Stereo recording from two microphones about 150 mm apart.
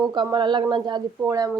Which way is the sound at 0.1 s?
30° right (ahead or behind).